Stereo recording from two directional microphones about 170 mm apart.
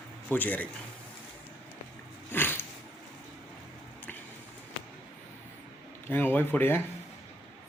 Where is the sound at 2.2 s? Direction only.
10° left (ahead or behind).